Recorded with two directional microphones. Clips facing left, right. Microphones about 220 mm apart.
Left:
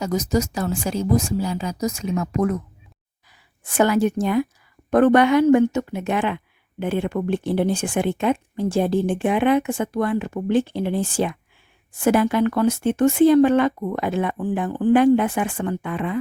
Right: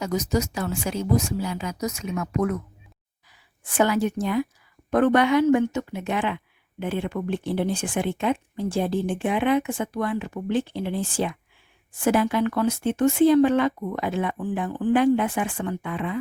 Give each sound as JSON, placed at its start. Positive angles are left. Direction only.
{"t": 0.5, "sound": "a woman's voice", "side_deg": 35}
{"t": 3.6, "sound": "speech", "side_deg": 45}